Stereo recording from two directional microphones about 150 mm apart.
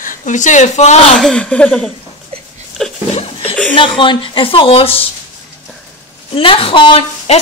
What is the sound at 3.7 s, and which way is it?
Speech, 35° left (ahead or behind).